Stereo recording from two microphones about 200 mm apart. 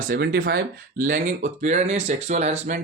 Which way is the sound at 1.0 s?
40° right (ahead or behind).